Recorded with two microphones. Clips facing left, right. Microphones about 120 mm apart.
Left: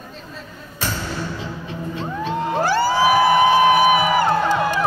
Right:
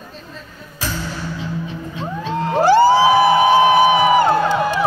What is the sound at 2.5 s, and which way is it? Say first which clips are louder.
Music: right 8 dB; 20° right (ahead or behind).